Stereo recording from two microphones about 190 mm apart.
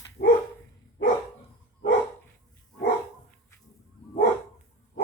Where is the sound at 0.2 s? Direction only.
55° left (ahead or behind).